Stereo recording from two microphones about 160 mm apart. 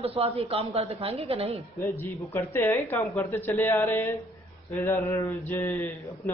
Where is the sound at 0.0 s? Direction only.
40° right (ahead or behind).